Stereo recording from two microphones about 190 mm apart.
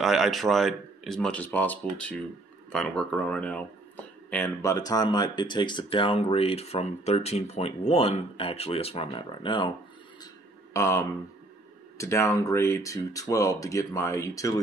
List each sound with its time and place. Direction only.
0.0 s speech: centre (ahead or behind); by 9.7 s 25° left (ahead or behind)
10.7 s speech: 15° left (ahead or behind)